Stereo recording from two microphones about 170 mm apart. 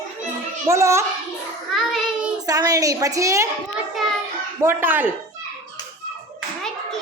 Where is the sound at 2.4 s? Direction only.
20° right (ahead or behind).